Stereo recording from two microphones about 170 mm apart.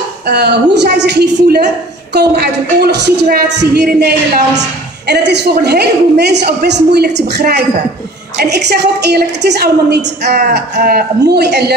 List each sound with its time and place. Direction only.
0.3 s a woman's voice: 80° right
5.0 s a woman's voice: 80° right